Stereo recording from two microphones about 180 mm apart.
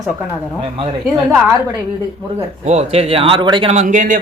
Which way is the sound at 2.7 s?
35° right (ahead or behind).